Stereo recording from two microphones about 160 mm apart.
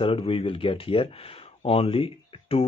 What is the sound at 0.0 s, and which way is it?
Speech, 35° left (ahead or behind).